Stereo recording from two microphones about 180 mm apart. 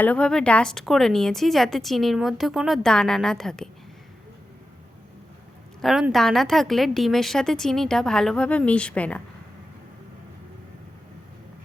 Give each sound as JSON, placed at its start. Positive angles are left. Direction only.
{"t": 0.0, "sound": "a woman's voice", "side_deg": 5}
{"t": 5.8, "sound": "a woman's voice", "side_deg": 0}